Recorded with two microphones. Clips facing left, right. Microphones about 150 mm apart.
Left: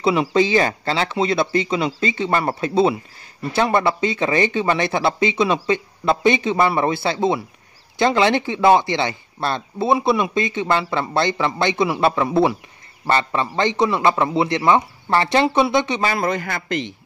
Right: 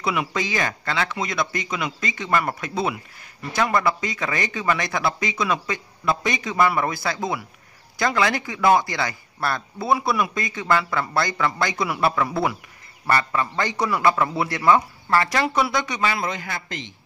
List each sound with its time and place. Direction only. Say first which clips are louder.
0.0 s speech: left 8 dB; 30° left (ahead or behind)
16.0 s a man's voice: left 4 dB; 45° left (ahead or behind); by 16.9 s 60° left (ahead or behind)